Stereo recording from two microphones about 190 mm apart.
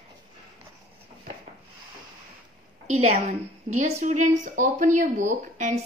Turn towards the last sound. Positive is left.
turn(degrees=-40)  # may be behind; listen again after turning